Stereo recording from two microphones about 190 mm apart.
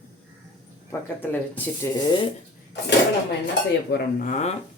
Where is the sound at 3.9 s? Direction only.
45° left (ahead or behind).